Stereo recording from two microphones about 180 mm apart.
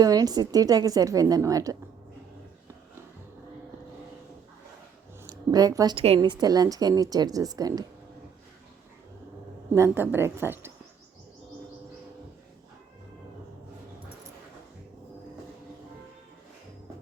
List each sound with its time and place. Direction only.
0.0 s a woman's voice: 20° right (ahead or behind)
5.2 s a woman's voice: 20° right (ahead or behind)
9.7 s a woman's voice: 15° right (ahead or behind)